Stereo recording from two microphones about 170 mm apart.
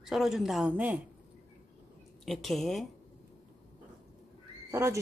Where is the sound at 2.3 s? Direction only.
Centre (ahead or behind).